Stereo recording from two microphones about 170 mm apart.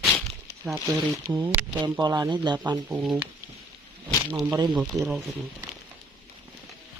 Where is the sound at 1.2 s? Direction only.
15° right (ahead or behind).